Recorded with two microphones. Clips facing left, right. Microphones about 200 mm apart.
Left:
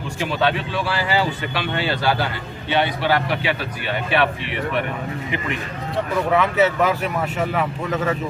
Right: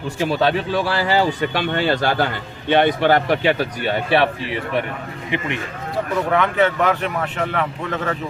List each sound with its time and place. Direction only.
0.2 s speech: 40° right (ahead or behind)
6.3 s speech: 5° left (ahead or behind)